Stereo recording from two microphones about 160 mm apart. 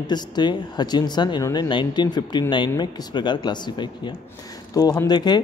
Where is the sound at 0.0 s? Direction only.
25° left (ahead or behind).